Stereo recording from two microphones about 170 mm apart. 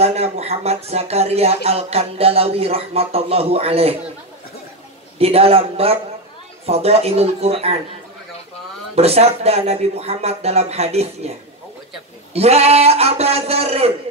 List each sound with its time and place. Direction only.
0.0 s speech: 40° right (ahead or behind)
5.2 s speech: 35° right (ahead or behind)
8.9 s speech: 35° right (ahead or behind)
12.4 s speech: 40° right (ahead or behind)